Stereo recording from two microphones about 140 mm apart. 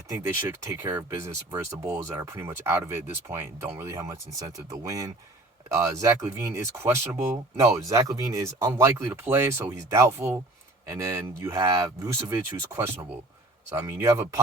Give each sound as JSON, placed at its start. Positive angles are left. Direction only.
{"t": 0.1, "sound": "speech", "side_deg": -20}